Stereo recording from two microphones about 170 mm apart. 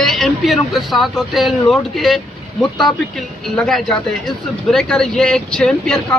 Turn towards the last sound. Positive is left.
turn(degrees=5)  # may be behind; listen again after turning